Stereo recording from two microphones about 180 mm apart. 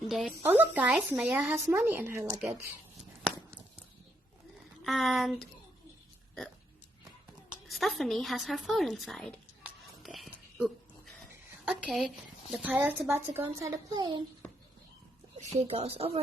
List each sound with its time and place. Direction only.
0.1 s a woman's voice: centre (ahead or behind)
4.8 s speech: centre (ahead or behind)
7.7 s a sound: centre (ahead or behind)
12.5 s a woman's voice: 5° right (ahead or behind); by 14.3 s 20° right (ahead or behind)
15.5 s speech: 35° right (ahead or behind)